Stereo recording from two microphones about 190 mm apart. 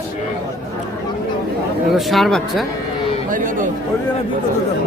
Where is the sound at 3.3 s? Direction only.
45° right (ahead or behind).